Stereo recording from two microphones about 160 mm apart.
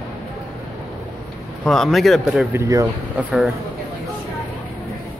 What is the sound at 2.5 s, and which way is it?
Speech, 20° right (ahead or behind).